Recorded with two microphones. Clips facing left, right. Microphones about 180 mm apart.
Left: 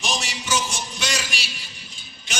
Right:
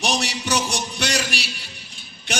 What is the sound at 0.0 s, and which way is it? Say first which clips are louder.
Music: right 5 dB; 65° right (ahead or behind).